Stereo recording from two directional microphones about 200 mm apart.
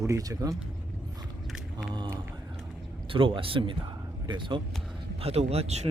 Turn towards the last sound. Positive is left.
turn(degrees=-35)  # may be behind; listen again after turning